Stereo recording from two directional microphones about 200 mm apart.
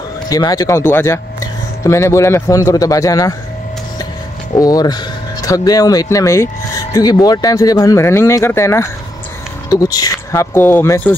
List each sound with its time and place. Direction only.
0.3 s speech: 20° left (ahead or behind)
4.6 s speech: 20° left (ahead or behind)